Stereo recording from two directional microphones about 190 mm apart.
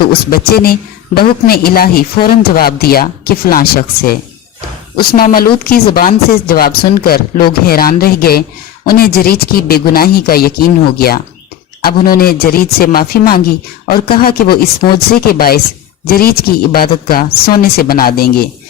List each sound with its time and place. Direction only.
0.0 s a woman's voice: 55° left (ahead or behind)